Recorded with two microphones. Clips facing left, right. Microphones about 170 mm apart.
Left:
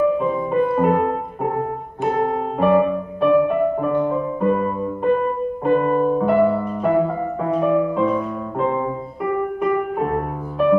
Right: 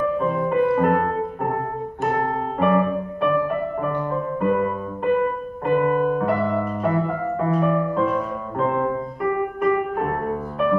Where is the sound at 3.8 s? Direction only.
10° left (ahead or behind).